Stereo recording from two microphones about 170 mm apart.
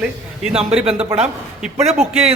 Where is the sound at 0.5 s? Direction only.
35° right (ahead or behind).